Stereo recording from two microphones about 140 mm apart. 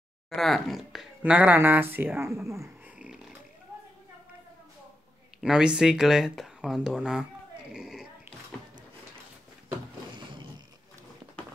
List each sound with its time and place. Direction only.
0.4 s speech: centre (ahead or behind); by 2.6 s 20° right (ahead or behind)
2.6 s purr: 5° right (ahead or behind)
5.4 s speech: 5° right (ahead or behind)
7.7 s a sound: 5° right (ahead or behind)